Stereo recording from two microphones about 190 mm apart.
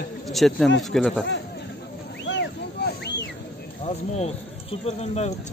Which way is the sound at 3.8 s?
30° left (ahead or behind).